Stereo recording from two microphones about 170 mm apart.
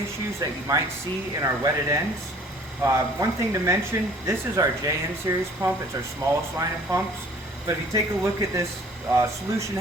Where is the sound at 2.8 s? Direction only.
15° right (ahead or behind).